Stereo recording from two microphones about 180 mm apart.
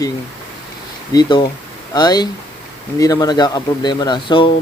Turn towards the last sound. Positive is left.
turn(degrees=25)  # may be behind; listen again after turning